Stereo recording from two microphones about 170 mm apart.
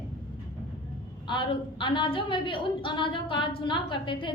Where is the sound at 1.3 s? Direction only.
30° left (ahead or behind).